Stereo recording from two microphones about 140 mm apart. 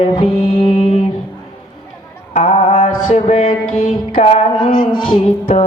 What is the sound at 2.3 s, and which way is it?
Mantra, 55° left (ahead or behind).